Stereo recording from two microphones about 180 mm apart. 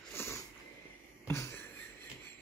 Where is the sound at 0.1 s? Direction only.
15° left (ahead or behind).